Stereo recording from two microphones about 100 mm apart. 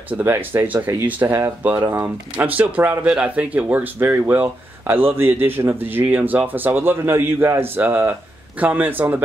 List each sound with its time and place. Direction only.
0.1 s speech: 20° right (ahead or behind)
2.5 s a man's voice: 15° right (ahead or behind)